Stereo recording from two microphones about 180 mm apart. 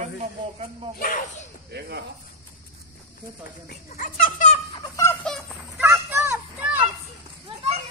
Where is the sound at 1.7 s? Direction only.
65° right (ahead or behind).